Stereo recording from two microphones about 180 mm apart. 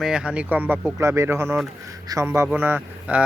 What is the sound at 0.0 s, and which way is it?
A man's voice, 5° right (ahead or behind).